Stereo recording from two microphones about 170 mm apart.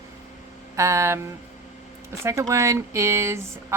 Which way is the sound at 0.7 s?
15° right (ahead or behind).